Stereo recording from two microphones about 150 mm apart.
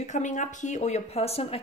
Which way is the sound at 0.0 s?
55° left (ahead or behind).